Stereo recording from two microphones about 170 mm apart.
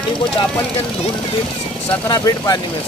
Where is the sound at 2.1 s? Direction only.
25° left (ahead or behind).